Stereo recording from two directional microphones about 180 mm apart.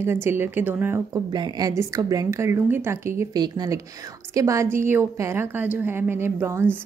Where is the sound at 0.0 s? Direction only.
15° right (ahead or behind).